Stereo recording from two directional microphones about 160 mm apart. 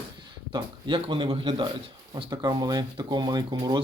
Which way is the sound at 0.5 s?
30° right (ahead or behind).